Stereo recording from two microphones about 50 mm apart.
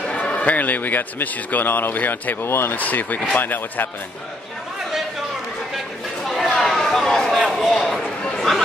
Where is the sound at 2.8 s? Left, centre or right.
Left.